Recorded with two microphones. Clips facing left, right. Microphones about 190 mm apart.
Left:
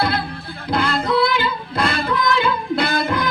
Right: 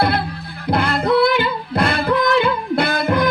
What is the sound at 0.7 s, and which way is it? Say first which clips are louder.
Music: right 3 dB; 55° right (ahead or behind).